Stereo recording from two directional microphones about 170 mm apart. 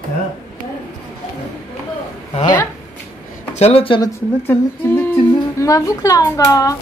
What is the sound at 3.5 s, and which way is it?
Speech, 35° left (ahead or behind).